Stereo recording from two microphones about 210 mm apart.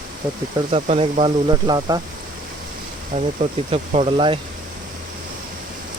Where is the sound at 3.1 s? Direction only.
30° right (ahead or behind).